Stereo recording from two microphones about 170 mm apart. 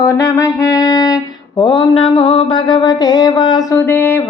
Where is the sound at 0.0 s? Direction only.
20° left (ahead or behind).